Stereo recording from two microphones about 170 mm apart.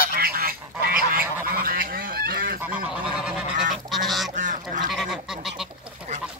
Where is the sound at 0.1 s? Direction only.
60° right (ahead or behind).